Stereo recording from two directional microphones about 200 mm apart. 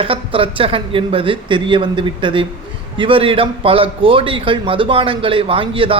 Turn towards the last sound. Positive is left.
turn(degrees=-25)  # may be behind; listen again after turning